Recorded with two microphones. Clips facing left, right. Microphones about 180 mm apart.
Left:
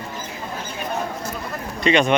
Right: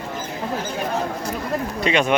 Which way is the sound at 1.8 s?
5° right (ahead or behind).